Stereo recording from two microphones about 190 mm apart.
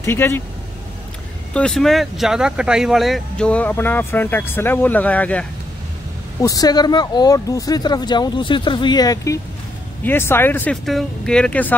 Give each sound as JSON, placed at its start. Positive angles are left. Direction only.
{"t": 0.0, "sound": "speech", "side_deg": 15}
{"t": 1.5, "sound": "speech", "side_deg": 5}
{"t": 6.4, "sound": "speech", "side_deg": 20}